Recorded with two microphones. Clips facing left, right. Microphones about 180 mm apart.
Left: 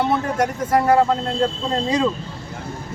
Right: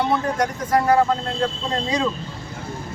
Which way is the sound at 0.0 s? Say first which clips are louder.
Left 1 dB; 5° left (ahead or behind).